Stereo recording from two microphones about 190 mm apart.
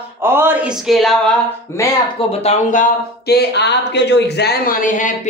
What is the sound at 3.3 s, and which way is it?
Speech, 60° left (ahead or behind).